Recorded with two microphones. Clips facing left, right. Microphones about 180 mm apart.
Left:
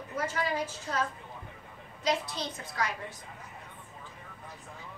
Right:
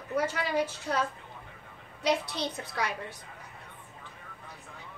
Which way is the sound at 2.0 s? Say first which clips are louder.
Right 2 dB; 65° right (ahead or behind).